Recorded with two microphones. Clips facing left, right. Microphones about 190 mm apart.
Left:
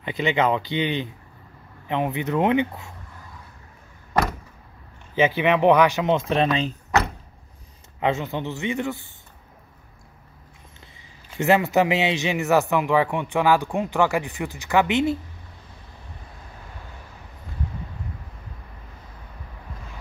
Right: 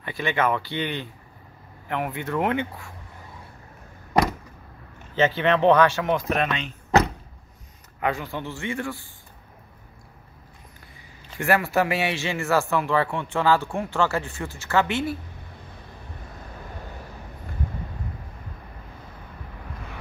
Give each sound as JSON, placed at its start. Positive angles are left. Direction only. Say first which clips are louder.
{"t": 0.0, "sound": "speech", "louder": "left 3 dB", "side_deg": 20}
{"t": 5.1, "sound": "speech", "louder": "left 1 dB", "side_deg": 10}
{"t": 8.0, "sound": "speech", "louder": "left 3 dB", "side_deg": 25}
{"t": 11.3, "sound": "speech", "louder": "left 3 dB", "side_deg": 20}